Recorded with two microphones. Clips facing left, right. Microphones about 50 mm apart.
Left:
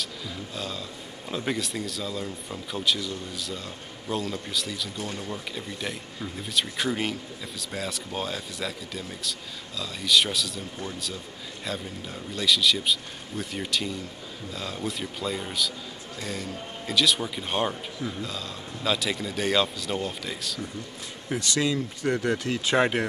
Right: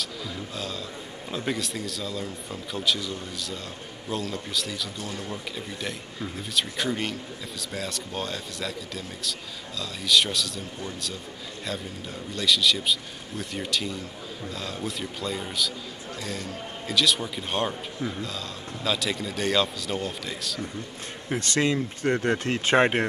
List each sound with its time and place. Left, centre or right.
0.6 s a sound: centre
1.3 s speech: centre
12.4 s speech: centre
21.4 s speech: right